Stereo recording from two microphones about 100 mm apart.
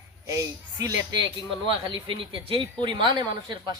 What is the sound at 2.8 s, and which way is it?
Speech, 50° right (ahead or behind).